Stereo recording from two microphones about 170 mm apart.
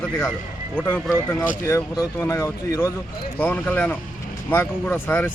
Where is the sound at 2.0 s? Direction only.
20° left (ahead or behind).